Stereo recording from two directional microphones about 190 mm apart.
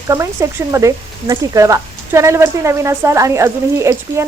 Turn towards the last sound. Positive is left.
turn(degrees=-15)  # may be behind; listen again after turning